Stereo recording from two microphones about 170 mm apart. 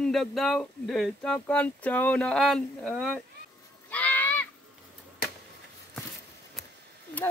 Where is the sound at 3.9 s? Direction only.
10° left (ahead or behind).